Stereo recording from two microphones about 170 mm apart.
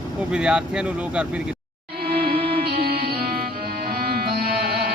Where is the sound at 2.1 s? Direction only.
65° right (ahead or behind).